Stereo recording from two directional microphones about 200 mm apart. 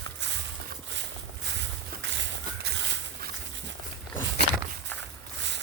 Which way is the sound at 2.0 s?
65° right (ahead or behind).